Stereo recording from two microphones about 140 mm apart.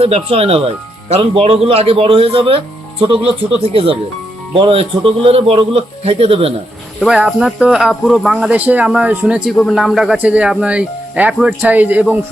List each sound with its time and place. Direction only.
0.0 s a man's voice: 45° right (ahead or behind)
7.0 s speech: 5° right (ahead or behind)